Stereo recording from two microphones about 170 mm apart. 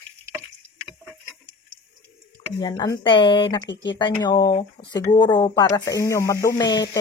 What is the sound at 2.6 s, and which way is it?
Speech, 25° left (ahead or behind).